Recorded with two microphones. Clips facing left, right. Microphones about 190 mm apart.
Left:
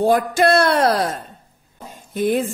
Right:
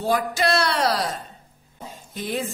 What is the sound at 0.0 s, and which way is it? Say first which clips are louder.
A woman's voice: left 7 dB; 50° left (ahead or behind).